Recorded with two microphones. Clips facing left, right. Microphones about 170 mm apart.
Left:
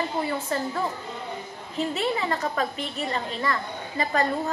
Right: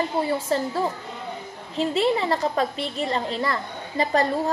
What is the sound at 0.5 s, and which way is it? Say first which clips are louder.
Speech: right 5 dB; 30° right (ahead or behind).